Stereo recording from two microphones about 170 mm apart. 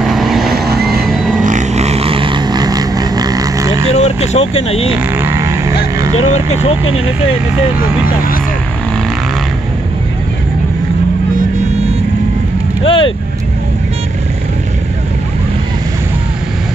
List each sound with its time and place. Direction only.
0.0 s vehicle: centre (ahead or behind)
1.4 s vehicle: 45° right (ahead or behind); by 3.8 s 20° right (ahead or behind)
3.9 s speech: 40° left (ahead or behind)
5.1 s a sound: 15° right (ahead or behind)
6.2 s speech: 40° left (ahead or behind)
12.8 s vehicle: 30° left (ahead or behind)